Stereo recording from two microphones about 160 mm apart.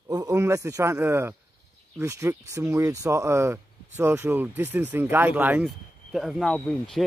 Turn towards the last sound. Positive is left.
turn(degrees=0)  # may be behind; listen again after turning